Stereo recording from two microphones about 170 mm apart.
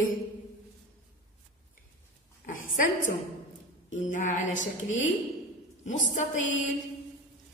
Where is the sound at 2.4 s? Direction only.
50° left (ahead or behind).